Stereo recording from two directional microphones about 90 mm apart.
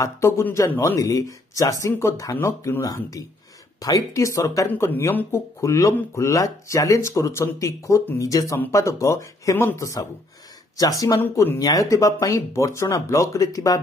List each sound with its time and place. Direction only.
0.0 s speech: 30° left (ahead or behind)
4.6 s speech: 25° left (ahead or behind)